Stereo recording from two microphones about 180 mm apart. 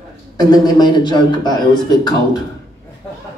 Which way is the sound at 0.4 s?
25° left (ahead or behind).